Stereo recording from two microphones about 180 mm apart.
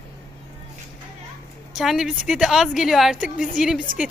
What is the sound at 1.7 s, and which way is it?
Speech, centre (ahead or behind).